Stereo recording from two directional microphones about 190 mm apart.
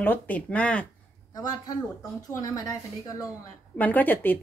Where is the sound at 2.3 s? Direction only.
15° left (ahead or behind).